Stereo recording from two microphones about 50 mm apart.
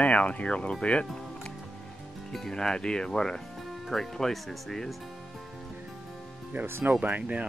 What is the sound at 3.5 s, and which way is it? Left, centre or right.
Speech, centre.